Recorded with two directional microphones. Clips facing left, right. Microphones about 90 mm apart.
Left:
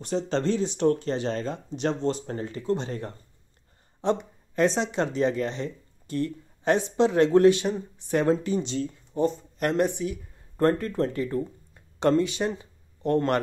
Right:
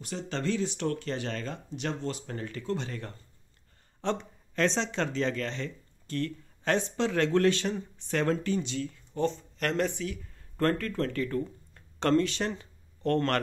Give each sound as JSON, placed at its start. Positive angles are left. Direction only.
{"t": 0.0, "sound": "speech", "side_deg": 30}
{"t": 9.2, "sound": "speech", "side_deg": 15}